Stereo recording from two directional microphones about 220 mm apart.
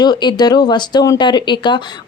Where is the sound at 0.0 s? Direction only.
20° left (ahead or behind).